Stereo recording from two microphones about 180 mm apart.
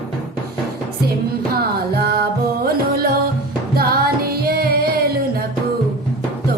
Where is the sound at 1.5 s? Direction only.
60° right (ahead or behind).